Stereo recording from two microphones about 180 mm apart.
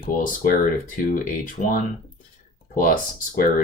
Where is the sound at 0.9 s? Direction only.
45° left (ahead or behind).